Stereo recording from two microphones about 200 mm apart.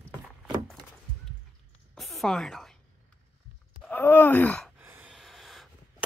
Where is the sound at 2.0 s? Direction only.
Centre (ahead or behind).